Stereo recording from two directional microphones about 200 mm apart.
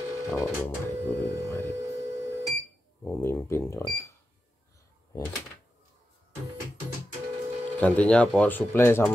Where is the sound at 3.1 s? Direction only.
15° left (ahead or behind).